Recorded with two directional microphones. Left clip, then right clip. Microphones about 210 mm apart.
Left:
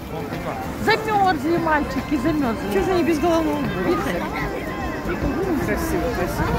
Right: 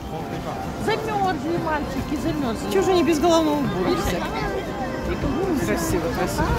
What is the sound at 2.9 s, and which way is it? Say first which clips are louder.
Speech: right 2 dB; 10° right (ahead or behind).